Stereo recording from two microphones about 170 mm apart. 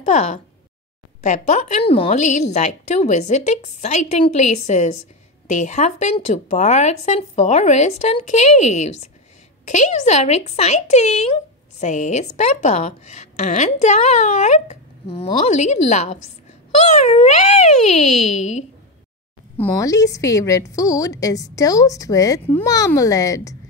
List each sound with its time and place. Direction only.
0.0 s a woman's voice: 40° left (ahead or behind)
19.5 s a woman's voice: 15° left (ahead or behind)